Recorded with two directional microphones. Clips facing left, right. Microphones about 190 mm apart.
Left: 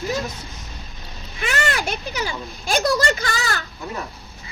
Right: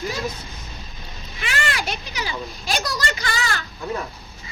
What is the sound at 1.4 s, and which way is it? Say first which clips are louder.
A child's voice: left 3 dB; 45° left (ahead or behind).